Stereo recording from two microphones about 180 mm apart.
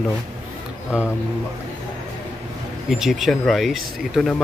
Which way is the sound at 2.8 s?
Centre (ahead or behind).